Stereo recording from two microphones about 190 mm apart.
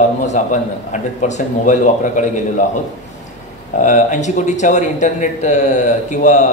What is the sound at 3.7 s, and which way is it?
A man's voice, 40° left (ahead or behind).